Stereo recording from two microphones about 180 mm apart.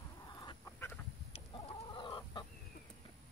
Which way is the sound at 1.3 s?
25° left (ahead or behind).